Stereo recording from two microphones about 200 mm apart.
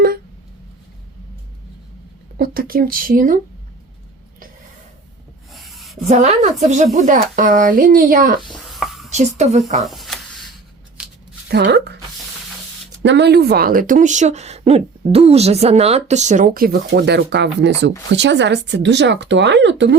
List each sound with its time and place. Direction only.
2.4 s speech: 45° right (ahead or behind)
5.5 s a sound: centre (ahead or behind)
6.1 s speech: 35° right (ahead or behind)
8.7 s whispering: centre (ahead or behind)
9.0 s speech: 35° right (ahead or behind)
9.8 s a sound: centre (ahead or behind)
11.4 s speech: 55° right (ahead or behind)
13.0 s speech: 60° right (ahead or behind)